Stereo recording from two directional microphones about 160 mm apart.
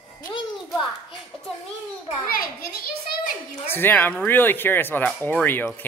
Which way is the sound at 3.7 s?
10° left (ahead or behind).